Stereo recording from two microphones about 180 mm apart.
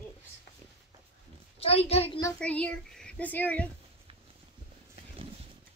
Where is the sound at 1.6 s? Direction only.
35° left (ahead or behind).